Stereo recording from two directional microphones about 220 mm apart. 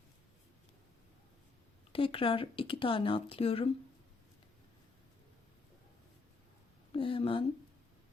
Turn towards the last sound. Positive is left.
turn(degrees=25)  # may be behind; listen again after turning